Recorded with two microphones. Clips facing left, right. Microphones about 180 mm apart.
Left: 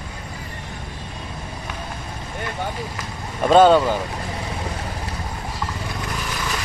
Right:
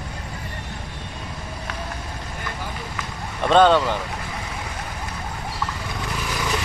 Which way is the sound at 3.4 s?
5° left (ahead or behind).